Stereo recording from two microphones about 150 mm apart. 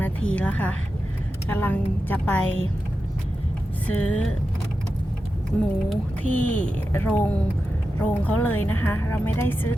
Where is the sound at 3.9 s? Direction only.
10° left (ahead or behind).